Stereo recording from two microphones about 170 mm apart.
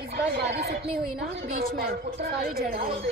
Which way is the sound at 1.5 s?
65° right (ahead or behind).